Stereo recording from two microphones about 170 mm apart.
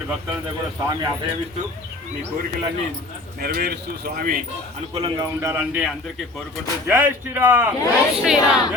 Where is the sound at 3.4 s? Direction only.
65° right (ahead or behind).